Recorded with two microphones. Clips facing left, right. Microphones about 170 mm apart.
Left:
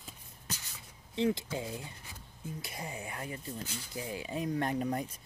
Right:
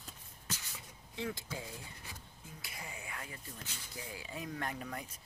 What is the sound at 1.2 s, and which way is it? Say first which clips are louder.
Speech: left 9 dB; 20° left (ahead or behind).